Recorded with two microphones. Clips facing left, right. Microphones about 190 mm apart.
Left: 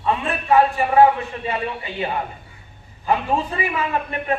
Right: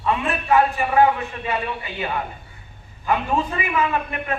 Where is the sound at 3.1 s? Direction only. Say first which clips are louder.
Left 1 dB; 30° left (ahead or behind).